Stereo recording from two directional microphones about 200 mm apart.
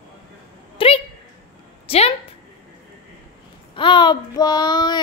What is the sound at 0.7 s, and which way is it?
A woman's voice, 30° left (ahead or behind).